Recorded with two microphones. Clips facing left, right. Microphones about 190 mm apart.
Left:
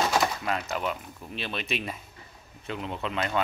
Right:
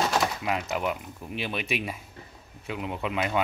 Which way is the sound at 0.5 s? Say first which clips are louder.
Right 1 dB; 15° right (ahead or behind).